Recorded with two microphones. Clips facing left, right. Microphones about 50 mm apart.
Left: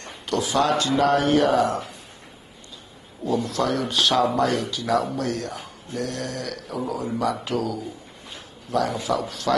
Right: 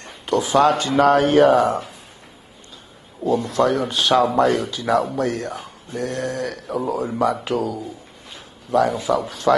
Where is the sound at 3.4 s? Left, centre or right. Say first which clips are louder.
Right 5 dB; right.